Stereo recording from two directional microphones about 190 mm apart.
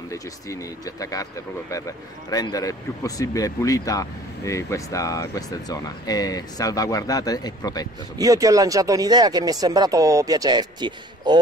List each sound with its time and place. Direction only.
0.1 s speech: 15° left (ahead or behind)
8.2 s speech: 15° right (ahead or behind)